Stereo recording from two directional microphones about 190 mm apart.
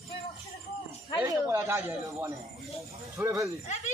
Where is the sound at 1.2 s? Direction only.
15° right (ahead or behind).